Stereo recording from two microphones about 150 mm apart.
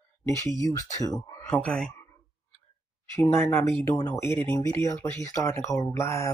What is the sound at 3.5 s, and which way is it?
Speech, 15° left (ahead or behind).